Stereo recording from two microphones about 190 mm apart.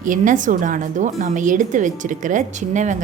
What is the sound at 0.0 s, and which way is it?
A woman's voice, 45° right (ahead or behind).